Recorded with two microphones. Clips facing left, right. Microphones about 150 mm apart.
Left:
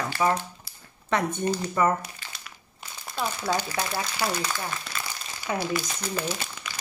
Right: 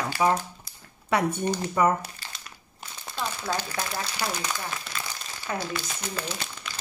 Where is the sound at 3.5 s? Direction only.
10° left (ahead or behind).